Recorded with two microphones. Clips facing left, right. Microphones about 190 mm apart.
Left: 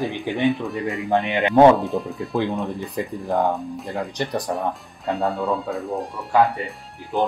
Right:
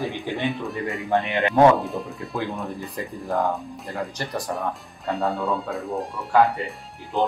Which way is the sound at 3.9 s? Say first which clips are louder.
Left 3 dB; 20° left (ahead or behind).